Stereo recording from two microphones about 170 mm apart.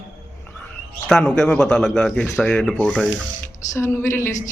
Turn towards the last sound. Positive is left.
turn(degrees=15)  # may be behind; listen again after turning